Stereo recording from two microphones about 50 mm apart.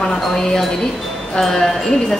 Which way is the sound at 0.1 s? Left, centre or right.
Centre.